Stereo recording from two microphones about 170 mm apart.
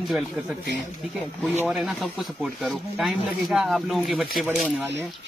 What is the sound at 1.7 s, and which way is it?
Speech, centre (ahead or behind).